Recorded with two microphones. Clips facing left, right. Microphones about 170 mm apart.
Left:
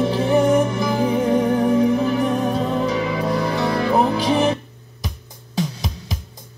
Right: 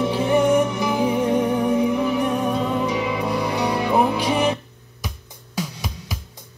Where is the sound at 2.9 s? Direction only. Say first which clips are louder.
Left 2 dB; 15° right (ahead or behind).